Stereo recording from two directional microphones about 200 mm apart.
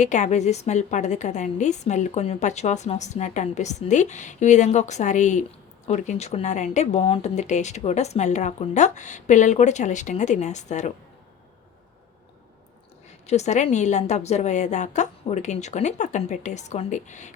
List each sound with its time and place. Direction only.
0.0 s a woman's voice: 35° left (ahead or behind)
13.2 s a woman's voice: 35° left (ahead or behind)